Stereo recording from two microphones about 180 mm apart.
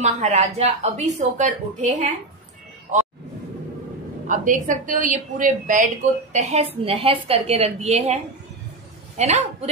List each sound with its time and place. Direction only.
0.0 s speech: 40° right (ahead or behind)
4.3 s a woman's voice: 45° right (ahead or behind)
6.3 s a woman's voice: 35° right (ahead or behind)